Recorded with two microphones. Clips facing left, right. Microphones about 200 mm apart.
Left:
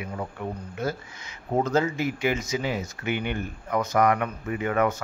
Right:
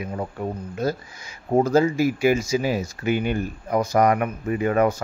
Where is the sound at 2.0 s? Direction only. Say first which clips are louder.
Right 6 dB; 10° right (ahead or behind).